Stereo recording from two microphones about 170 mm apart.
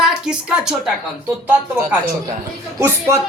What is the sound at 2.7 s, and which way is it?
Speech, 15° right (ahead or behind).